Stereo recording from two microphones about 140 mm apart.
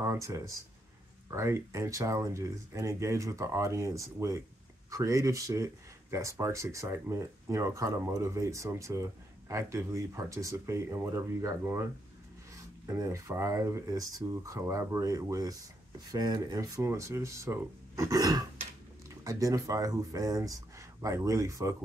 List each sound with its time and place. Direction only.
0.0 s speech: 20° right (ahead or behind)